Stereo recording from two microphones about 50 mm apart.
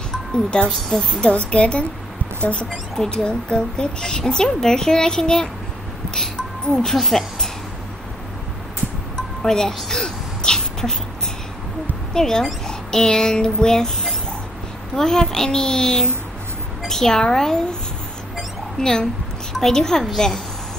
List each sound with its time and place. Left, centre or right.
0.3 s a woman's voice: centre
1.3 s a woman's voice: left
3.0 s a woman's voice: centre
6.6 s a woman's voice: centre
9.4 s a sound: centre
12.1 s a child's voice: centre
18.8 s a woman's voice: centre